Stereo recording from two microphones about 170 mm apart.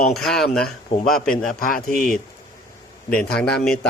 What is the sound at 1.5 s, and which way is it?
Speech, 55° left (ahead or behind).